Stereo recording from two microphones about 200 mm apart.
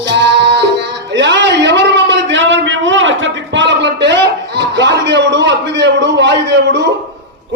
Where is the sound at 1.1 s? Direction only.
60° right (ahead or behind).